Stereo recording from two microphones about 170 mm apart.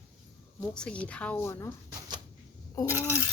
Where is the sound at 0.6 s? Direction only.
5° left (ahead or behind).